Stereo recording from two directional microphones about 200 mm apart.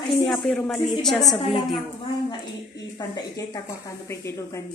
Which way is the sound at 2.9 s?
20° left (ahead or behind).